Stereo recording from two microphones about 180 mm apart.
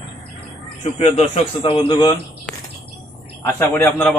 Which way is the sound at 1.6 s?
25° left (ahead or behind).